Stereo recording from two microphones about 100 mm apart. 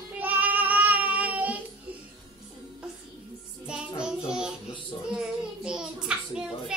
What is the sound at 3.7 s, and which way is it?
Child singing, 10° right (ahead or behind).